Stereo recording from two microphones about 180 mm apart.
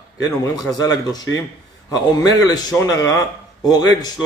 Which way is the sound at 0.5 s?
20° left (ahead or behind).